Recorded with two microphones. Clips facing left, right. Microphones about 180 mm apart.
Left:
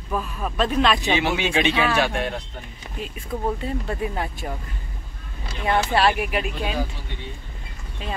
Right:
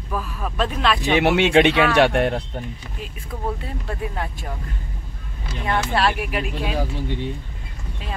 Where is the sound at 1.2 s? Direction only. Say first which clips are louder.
Right 7 dB; 65° right (ahead or behind).